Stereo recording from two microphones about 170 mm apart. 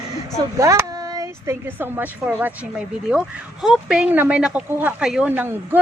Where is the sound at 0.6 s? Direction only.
20° right (ahead or behind).